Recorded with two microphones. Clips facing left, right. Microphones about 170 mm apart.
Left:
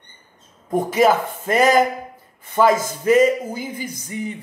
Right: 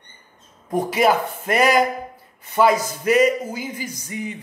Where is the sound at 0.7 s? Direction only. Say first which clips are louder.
Left 2 dB; 45° left (ahead or behind).